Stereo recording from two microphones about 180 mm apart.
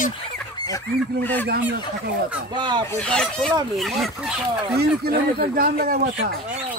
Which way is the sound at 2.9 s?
5° left (ahead or behind).